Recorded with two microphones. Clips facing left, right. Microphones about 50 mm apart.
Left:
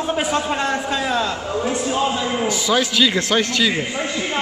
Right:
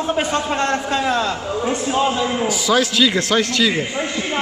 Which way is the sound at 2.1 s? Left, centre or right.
Centre.